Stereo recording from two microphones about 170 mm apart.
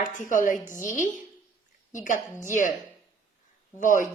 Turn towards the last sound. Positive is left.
turn(degrees=50)  # may be behind; listen again after turning